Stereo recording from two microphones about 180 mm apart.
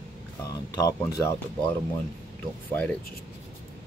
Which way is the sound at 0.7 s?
20° left (ahead or behind).